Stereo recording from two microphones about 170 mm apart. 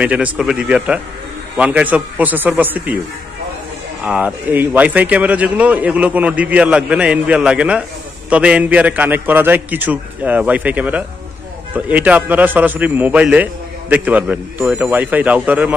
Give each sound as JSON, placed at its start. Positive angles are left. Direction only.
{"t": 0.0, "sound": "a man's voice", "side_deg": -10}
{"t": 4.0, "sound": "a man's voice", "side_deg": -10}